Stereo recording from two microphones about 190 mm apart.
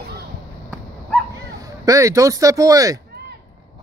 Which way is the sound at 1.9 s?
15° right (ahead or behind).